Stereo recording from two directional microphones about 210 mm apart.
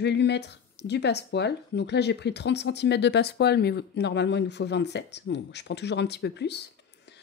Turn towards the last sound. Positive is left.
turn(degrees=55)  # may be behind; listen again after turning